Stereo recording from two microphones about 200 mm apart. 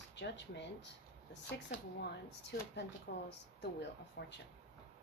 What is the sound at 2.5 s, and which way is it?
Speech, 50° left (ahead or behind).